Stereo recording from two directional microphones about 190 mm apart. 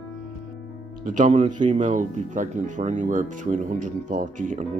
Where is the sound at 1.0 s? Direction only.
40° right (ahead or behind).